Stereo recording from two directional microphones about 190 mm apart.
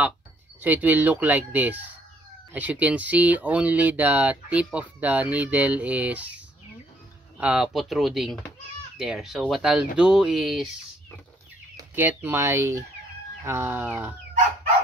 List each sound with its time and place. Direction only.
0.6 s speech: 10° right (ahead or behind)
11.7 s speech: 10° right (ahead or behind)